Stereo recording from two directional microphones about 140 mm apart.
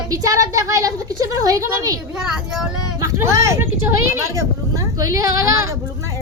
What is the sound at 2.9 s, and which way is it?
Speech, 20° right (ahead or behind).